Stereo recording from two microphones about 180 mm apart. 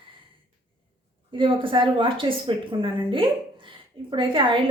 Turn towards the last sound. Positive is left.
turn(degrees=-30)  # may be behind; listen again after turning